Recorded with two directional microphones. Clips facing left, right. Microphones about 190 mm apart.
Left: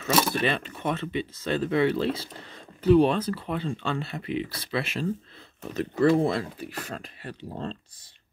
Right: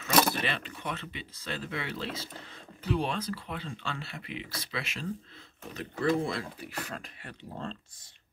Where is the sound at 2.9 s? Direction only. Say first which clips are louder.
Left 12 dB; 55° left (ahead or behind).